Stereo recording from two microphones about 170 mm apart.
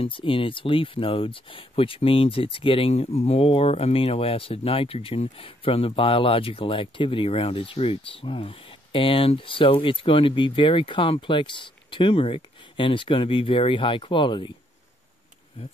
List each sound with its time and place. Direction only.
0.0 s speech: 30° left (ahead or behind)